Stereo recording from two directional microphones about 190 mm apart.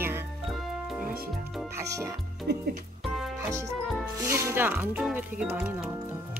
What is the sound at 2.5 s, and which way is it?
Speech, 60° right (ahead or behind).